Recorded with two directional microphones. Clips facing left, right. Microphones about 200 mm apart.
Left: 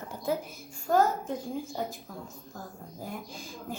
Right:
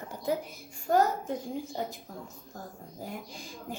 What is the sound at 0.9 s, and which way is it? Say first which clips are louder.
A woman's voice: even; 25° right (ahead or behind).